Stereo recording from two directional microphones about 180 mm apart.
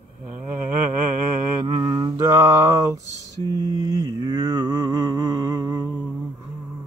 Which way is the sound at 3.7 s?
20° right (ahead or behind).